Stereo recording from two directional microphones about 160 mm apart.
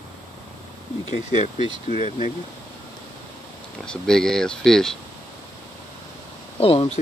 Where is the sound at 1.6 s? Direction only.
30° right (ahead or behind).